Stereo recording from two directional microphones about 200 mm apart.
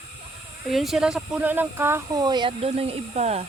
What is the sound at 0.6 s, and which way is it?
Speech, centre (ahead or behind).